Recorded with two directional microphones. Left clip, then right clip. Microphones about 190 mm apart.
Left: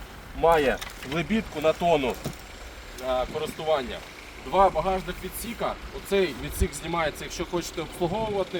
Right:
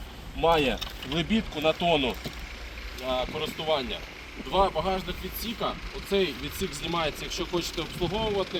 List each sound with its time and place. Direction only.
0.4 s speech: 20° left (ahead or behind)
3.1 s speech: 30° left (ahead or behind)